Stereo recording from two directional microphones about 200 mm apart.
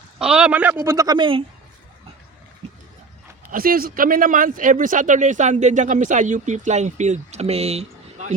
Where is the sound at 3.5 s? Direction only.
45° right (ahead or behind).